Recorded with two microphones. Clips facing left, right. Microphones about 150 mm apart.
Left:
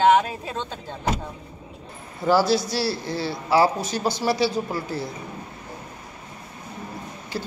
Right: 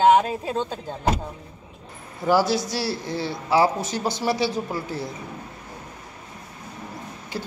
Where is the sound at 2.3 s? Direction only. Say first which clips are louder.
Left 1 dB; 15° right (ahead or behind).